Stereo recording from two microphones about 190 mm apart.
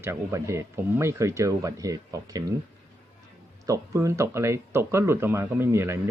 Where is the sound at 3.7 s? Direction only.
15° right (ahead or behind).